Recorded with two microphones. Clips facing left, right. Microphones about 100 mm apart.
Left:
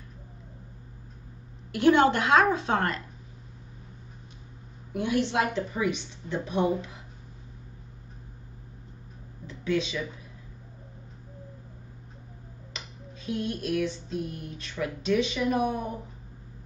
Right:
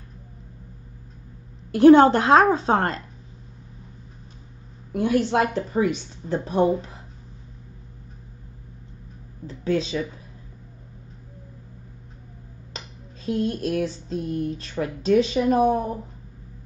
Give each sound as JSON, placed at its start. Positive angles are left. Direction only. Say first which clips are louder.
{"t": 1.7, "sound": "a woman's voice", "louder": "right 8 dB", "side_deg": -35}
{"t": 4.9, "sound": "a woman's voice", "louder": "right 5 dB", "side_deg": -40}
{"t": 9.5, "sound": "speech", "louder": "right 4 dB", "side_deg": -35}
{"t": 12.7, "sound": "a sound", "louder": "right 3 dB", "side_deg": -35}